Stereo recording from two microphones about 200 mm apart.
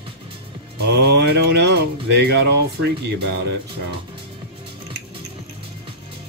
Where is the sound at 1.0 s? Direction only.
55° right (ahead or behind).